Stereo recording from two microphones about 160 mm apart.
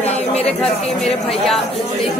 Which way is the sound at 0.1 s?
40° left (ahead or behind).